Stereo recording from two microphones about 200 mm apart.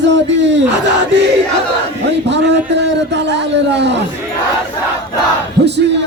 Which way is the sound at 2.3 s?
60° right (ahead or behind).